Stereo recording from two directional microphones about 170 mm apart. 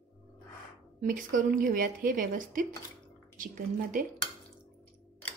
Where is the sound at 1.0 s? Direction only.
55° right (ahead or behind).